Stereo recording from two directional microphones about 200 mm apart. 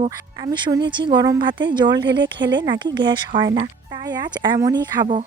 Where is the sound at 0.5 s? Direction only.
20° right (ahead or behind).